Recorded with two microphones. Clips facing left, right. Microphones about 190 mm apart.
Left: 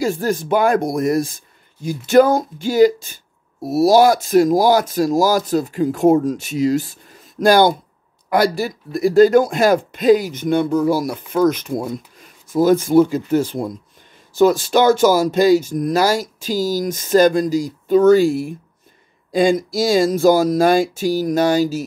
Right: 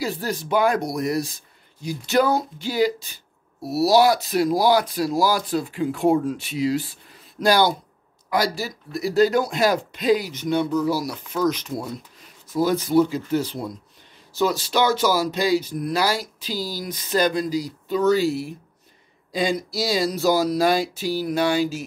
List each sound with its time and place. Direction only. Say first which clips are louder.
0.0 s speech: left 7 dB; 50° left (ahead or behind)